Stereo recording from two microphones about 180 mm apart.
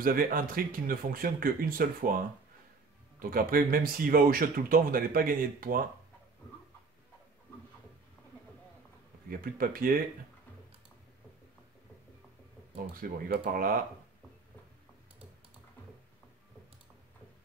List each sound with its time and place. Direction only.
0.0 s speech: 50° right (ahead or behind)
9.3 s speech: 55° right (ahead or behind)
12.7 s speech: 55° right (ahead or behind)